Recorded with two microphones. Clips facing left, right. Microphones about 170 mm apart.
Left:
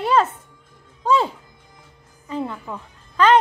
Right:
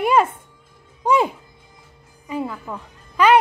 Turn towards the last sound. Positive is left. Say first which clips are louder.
# right 1 dB
turn(degrees=-10)  # may be behind; listen again after turning